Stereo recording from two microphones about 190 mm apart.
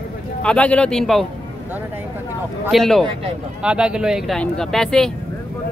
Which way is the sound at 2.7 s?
Centre (ahead or behind).